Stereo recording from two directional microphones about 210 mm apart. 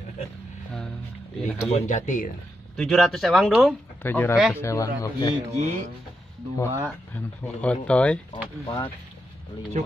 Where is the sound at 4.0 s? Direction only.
10° left (ahead or behind).